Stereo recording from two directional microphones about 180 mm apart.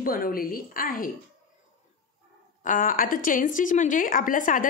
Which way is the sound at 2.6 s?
50° left (ahead or behind).